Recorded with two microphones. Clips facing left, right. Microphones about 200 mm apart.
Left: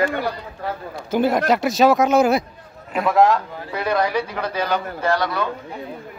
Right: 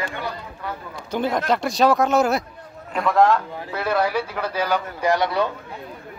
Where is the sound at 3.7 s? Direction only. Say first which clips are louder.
Left 1 dB; 5° right (ahead or behind); by 5.4 s 25° right (ahead or behind).